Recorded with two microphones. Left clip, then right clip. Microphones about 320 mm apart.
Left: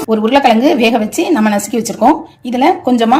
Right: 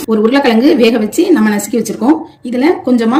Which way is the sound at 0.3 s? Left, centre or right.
Centre.